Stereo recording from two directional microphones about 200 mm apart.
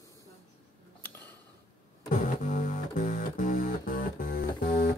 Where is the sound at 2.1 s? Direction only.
40° left (ahead or behind).